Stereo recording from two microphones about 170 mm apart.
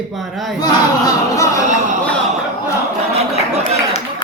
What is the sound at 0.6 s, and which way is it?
Speech, 20° left (ahead or behind).